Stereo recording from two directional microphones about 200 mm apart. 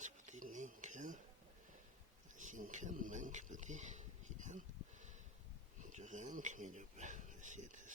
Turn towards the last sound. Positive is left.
turn(degrees=-40)  # may be behind; listen again after turning